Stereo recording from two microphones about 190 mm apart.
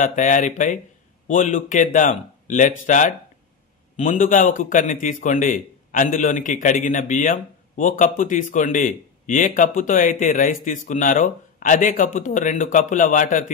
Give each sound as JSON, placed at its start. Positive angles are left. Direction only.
{"t": 0.0, "sound": "speech", "side_deg": 40}